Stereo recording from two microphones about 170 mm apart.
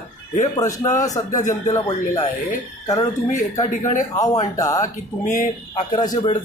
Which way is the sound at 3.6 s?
45° left (ahead or behind).